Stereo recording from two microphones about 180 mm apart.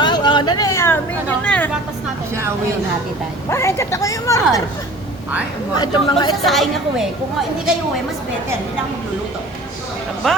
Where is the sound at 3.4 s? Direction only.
15° left (ahead or behind).